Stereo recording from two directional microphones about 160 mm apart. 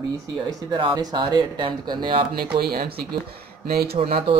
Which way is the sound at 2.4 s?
70° right (ahead or behind).